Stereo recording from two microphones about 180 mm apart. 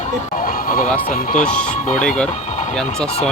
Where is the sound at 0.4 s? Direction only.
50° left (ahead or behind).